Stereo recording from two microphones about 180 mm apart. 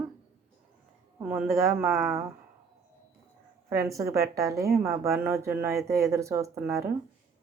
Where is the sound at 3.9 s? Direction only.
20° right (ahead or behind).